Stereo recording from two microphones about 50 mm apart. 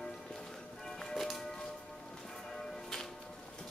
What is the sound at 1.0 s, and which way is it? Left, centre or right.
Music, centre.